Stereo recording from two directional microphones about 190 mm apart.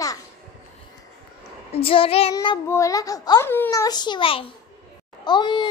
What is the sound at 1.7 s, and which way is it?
A child's voice, 30° left (ahead or behind).